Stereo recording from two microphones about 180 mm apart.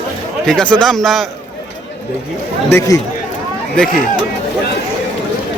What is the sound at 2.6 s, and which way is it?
Speech, 15° left (ahead or behind).